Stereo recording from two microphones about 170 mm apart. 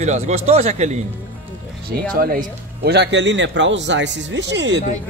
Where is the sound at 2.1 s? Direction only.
55° right (ahead or behind); by 4.8 s 90° right.